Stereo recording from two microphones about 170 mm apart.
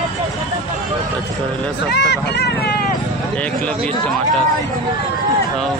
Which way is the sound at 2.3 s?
65° left (ahead or behind).